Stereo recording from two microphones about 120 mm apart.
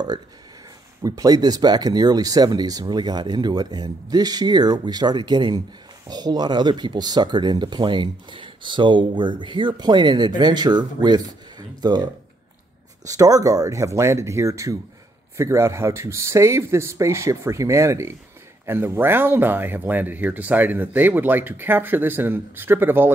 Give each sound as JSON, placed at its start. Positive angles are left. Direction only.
{"t": 1.0, "sound": "speech", "side_deg": -30}